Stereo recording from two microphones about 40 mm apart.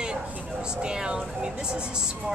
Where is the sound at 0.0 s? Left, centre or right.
Right.